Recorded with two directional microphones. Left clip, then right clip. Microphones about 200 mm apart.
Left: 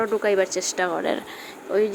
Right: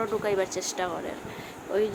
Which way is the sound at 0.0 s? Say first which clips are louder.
Left 6 dB; 25° left (ahead or behind).